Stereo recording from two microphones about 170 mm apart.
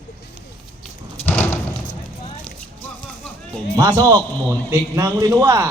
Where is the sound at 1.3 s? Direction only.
10° left (ahead or behind).